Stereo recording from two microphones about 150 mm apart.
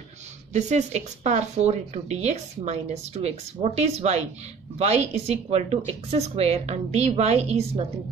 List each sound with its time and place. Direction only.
0.5 s speech: 50° right (ahead or behind)